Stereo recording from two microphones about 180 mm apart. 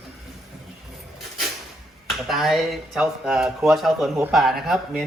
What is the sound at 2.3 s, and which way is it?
Speech, centre (ahead or behind).